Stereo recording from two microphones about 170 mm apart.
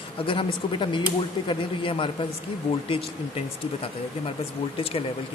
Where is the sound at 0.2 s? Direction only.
30° left (ahead or behind).